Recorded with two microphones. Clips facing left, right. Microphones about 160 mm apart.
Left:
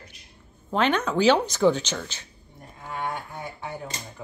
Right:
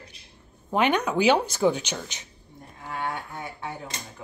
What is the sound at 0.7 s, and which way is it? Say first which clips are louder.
A woman's voice: even; 15° right (ahead or behind).